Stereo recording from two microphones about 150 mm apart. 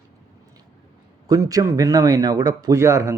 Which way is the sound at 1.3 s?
25° right (ahead or behind).